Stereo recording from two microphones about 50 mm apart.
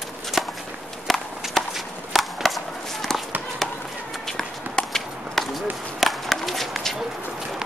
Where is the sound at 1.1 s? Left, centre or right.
Centre.